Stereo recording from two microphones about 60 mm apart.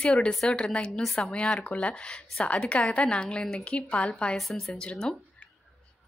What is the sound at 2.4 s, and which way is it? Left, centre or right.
Speech, centre.